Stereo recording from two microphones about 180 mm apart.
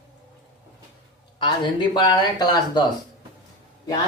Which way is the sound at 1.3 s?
25° left (ahead or behind).